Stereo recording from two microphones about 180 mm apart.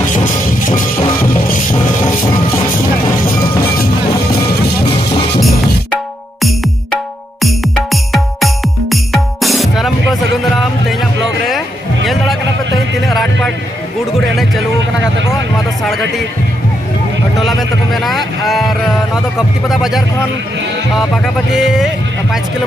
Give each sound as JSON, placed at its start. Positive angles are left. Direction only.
{"t": 0.1, "sound": "music", "side_deg": 45}
{"t": 3.6, "sound": "music", "side_deg": 55}
{"t": 7.4, "sound": "music", "side_deg": 0}
{"t": 10.9, "sound": "a sound", "side_deg": 0}
{"t": 13.1, "sound": "music", "side_deg": 0}
{"t": 17.4, "sound": "vehicle", "side_deg": 0}
{"t": 19.7, "sound": "music", "side_deg": 0}